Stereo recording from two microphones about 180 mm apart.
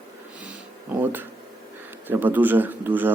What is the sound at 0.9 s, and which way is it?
Speech, 10° right (ahead or behind).